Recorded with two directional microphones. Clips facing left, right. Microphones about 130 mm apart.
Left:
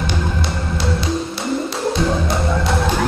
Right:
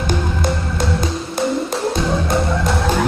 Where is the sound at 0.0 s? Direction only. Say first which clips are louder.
Right 2 dB; 45° right (ahead or behind).